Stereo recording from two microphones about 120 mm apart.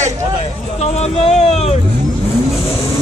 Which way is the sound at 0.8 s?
60° left (ahead or behind).